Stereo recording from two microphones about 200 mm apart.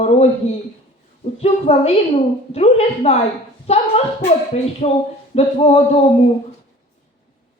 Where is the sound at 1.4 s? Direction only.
30° left (ahead or behind).